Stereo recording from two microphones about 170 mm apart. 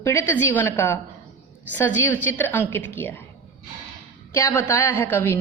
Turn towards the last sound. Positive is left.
turn(degrees=15)  # may be behind; listen again after turning